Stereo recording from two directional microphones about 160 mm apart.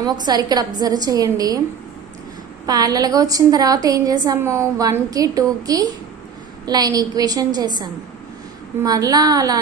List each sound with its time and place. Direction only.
0.0 s a woman's voice: 25° right (ahead or behind)
2.6 s a woman's voice: 25° right (ahead or behind)